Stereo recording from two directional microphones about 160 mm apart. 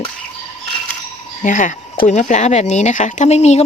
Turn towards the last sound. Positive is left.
turn(degrees=45)  # may be behind; listen again after turning